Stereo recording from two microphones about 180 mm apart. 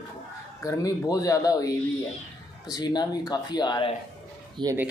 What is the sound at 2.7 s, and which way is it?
Speech, 25° left (ahead or behind).